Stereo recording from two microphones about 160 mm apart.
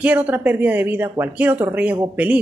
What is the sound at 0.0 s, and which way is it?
Speech, 10° right (ahead or behind).